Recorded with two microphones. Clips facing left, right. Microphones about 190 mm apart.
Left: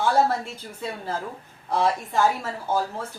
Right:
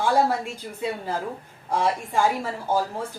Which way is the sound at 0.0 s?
10° right (ahead or behind).